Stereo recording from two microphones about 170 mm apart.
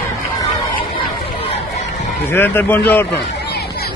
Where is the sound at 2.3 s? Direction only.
10° left (ahead or behind).